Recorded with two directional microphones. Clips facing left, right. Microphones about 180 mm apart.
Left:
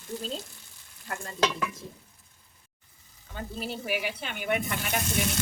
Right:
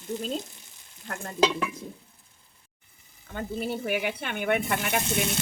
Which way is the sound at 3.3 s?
55° right (ahead or behind).